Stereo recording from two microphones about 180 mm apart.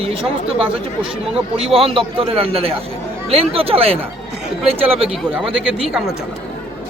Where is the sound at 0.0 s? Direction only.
30° right (ahead or behind).